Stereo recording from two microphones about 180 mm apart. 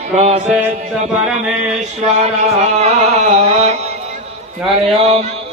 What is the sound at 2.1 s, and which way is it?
Mantra, 35° right (ahead or behind).